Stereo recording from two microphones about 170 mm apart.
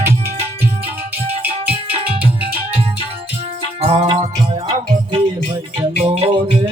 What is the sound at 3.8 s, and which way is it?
Music, 35° right (ahead or behind).